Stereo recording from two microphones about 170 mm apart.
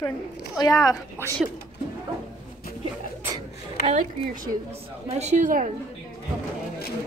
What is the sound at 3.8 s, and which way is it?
A woman's voice, 45° right (ahead or behind).